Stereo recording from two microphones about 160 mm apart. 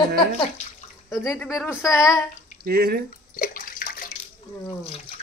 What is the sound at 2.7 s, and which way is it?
Speech, 75° right (ahead or behind).